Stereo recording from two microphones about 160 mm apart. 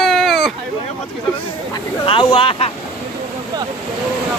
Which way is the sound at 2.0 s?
30° left (ahead or behind).